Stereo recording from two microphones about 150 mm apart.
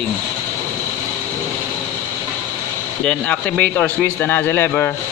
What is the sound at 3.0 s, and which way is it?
Speech, 10° left (ahead or behind).